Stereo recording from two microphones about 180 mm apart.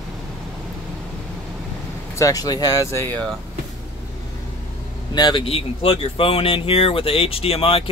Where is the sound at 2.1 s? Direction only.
20° left (ahead or behind).